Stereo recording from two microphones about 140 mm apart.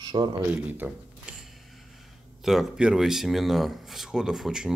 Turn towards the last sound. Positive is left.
turn(degrees=-5)  # may be behind; listen again after turning